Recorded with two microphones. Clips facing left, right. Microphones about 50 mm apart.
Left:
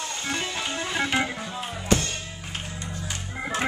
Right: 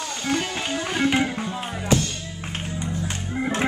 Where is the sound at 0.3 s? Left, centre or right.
Right.